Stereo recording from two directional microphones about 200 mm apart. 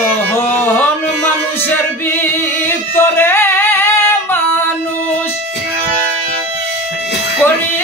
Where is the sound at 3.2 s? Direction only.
10° left (ahead or behind).